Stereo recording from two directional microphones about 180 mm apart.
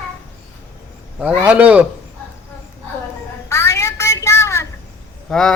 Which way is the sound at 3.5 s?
15° left (ahead or behind).